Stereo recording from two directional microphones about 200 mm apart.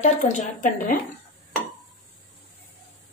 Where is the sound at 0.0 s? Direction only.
35° left (ahead or behind).